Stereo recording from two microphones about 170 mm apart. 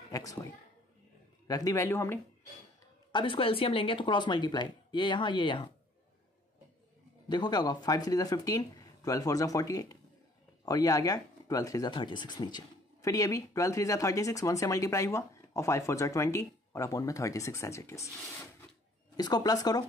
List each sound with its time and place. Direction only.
0.1 s speech: 20° left (ahead or behind)
1.5 s speech: 20° left (ahead or behind)
3.1 s speech: 30° left (ahead or behind)
7.2 s speech: 25° left (ahead or behind)